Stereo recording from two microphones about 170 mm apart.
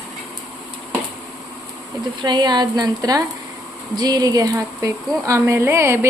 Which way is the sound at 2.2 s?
25° right (ahead or behind).